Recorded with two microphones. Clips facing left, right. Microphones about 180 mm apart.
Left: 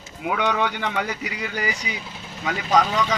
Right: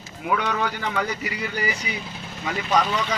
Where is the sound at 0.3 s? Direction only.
90° left.